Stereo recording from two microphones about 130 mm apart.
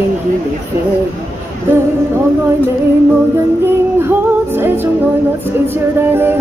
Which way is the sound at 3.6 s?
15° right (ahead or behind).